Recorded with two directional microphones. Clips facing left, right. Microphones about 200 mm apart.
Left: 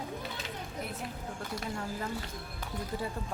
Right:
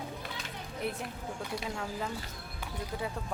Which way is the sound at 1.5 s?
Centre (ahead or behind).